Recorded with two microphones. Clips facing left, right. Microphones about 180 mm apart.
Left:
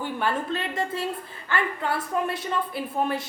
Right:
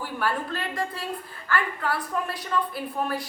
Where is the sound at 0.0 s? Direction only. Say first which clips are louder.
Left 1 dB; 25° left (ahead or behind).